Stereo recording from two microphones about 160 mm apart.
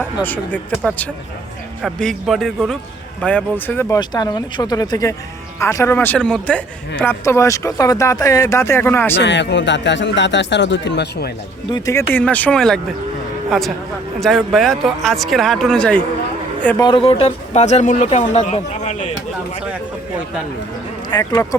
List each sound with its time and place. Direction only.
0.3 s a woman's voice: 10° left (ahead or behind)
9.1 s speech: 90° left
11.7 s a woman's voice: 20° left (ahead or behind)
16.8 s speech: 35° left (ahead or behind)
21.1 s speech: 20° left (ahead or behind)